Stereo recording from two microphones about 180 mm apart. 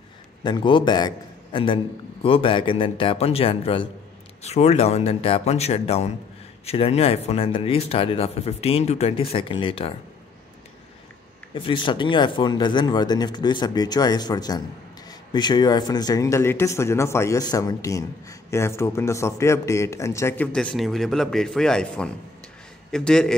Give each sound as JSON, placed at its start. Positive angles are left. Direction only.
{"t": 0.4, "sound": "a man's voice", "side_deg": 25}
{"t": 11.5, "sound": "speech", "side_deg": 25}
{"t": 20.5, "sound": "speech", "side_deg": 0}